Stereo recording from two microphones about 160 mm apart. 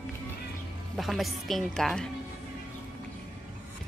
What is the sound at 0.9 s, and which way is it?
A woman's voice, centre (ahead or behind).